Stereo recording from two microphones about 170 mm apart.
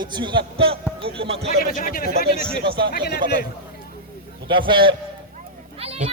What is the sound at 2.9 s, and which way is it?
Speech, 70° left (ahead or behind).